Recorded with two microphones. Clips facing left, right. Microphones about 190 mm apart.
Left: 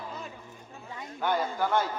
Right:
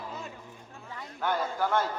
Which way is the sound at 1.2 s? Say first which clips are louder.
Left 1 dB; centre (ahead or behind).